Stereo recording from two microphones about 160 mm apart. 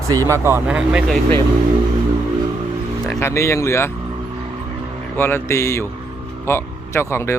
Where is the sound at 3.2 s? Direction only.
15° left (ahead or behind).